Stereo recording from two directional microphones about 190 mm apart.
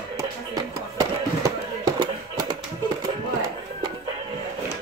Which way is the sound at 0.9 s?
20° right (ahead or behind).